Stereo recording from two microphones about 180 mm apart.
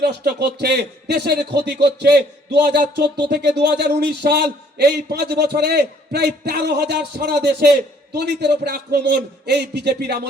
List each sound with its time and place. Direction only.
0.0 s a man's voice: 70° right (ahead or behind)